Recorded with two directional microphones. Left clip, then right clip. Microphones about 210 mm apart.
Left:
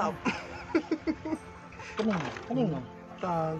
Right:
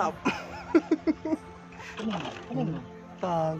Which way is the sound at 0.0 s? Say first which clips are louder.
Right 2 dB; 35° right (ahead or behind).